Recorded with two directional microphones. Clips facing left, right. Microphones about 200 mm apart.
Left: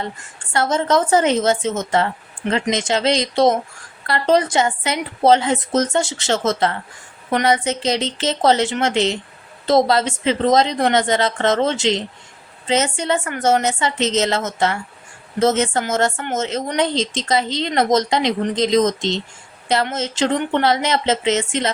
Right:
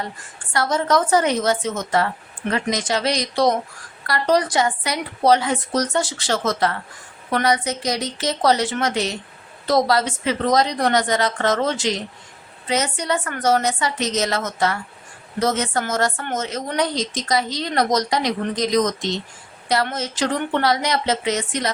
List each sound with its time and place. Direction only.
0.5 s a woman's voice: 25° left (ahead or behind)